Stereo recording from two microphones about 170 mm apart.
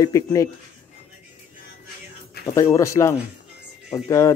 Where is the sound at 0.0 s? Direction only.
20° left (ahead or behind).